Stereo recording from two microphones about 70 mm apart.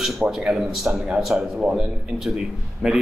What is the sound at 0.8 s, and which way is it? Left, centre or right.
A man's voice, centre.